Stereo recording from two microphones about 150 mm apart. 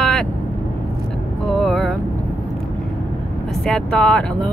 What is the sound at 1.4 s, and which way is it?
Speech, centre (ahead or behind).